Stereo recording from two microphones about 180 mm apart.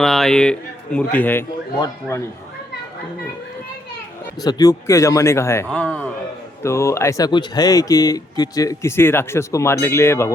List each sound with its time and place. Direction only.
0.0 s speech: centre (ahead or behind)
4.4 s speech: 20° left (ahead or behind)